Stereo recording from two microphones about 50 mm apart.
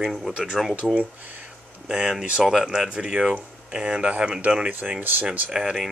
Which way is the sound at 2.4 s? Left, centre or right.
Centre.